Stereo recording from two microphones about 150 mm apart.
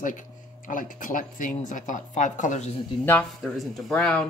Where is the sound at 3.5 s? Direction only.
Centre (ahead or behind).